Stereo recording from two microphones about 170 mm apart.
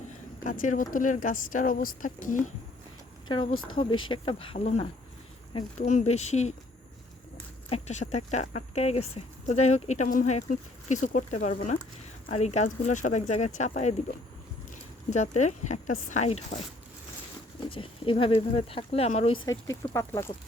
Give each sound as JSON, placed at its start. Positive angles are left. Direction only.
{"t": 0.4, "sound": "speech", "side_deg": 50}
{"t": 3.2, "sound": "speech", "side_deg": 30}
{"t": 7.7, "sound": "speech", "side_deg": 40}
{"t": 15.1, "sound": "speech", "side_deg": 45}
{"t": 17.7, "sound": "speech", "side_deg": 30}
{"t": 19.5, "sound": "speech", "side_deg": 20}